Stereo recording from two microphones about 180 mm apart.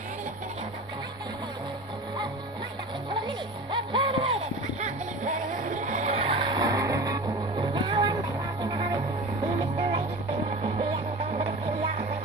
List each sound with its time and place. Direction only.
3.1 s music: 25° right (ahead or behind)
4.7 s music: 40° right (ahead or behind)